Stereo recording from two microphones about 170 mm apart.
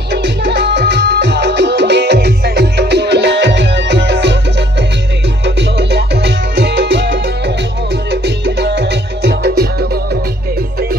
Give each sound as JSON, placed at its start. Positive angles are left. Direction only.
{"t": 0.1, "sound": "music", "side_deg": -90}